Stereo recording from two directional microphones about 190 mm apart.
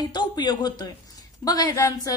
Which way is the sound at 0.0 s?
20° left (ahead or behind).